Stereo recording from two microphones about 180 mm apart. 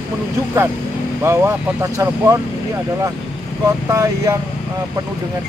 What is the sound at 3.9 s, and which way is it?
Speech, 15° right (ahead or behind).